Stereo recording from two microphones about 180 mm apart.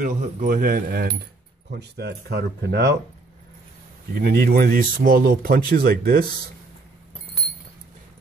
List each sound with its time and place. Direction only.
0.0 s speech: 45° right (ahead or behind)
1.7 s speech: 65° right (ahead or behind)
4.2 s speech: 60° right (ahead or behind)